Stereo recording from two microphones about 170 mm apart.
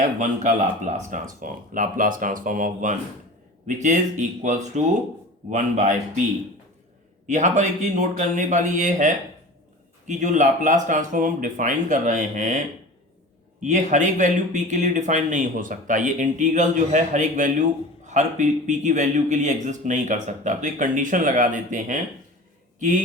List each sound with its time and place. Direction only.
0.2 s speech: 45° right (ahead or behind)
7.3 s speech: 45° right (ahead or behind)